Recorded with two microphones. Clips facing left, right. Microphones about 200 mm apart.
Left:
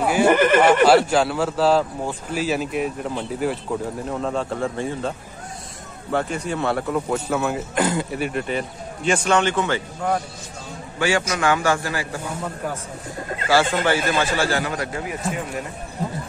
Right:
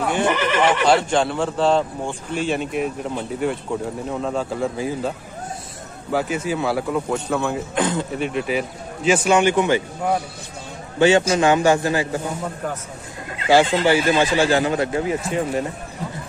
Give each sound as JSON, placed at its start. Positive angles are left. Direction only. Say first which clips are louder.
{"t": 0.0, "sound": "neigh", "louder": "left 3 dB", "side_deg": 5}
{"t": 0.3, "sound": "speech", "louder": "left 6 dB", "side_deg": 50}
{"t": 0.8, "sound": "a man's voice", "louder": "left 2 dB", "side_deg": 5}
{"t": 6.1, "sound": "a man's voice", "louder": "right 2 dB", "side_deg": -5}
{"t": 13.5, "sound": "a man's voice", "louder": "right 4 dB", "side_deg": -20}